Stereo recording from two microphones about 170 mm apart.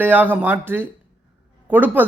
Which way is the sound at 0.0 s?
10° right (ahead or behind).